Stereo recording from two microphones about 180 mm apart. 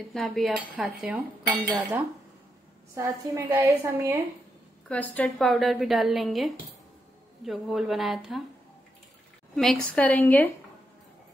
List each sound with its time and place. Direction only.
0.1 s speech: centre (ahead or behind)
2.9 s a woman's voice: 15° right (ahead or behind)
4.8 s speech: 10° left (ahead or behind)
9.6 s a woman's voice: 5° left (ahead or behind)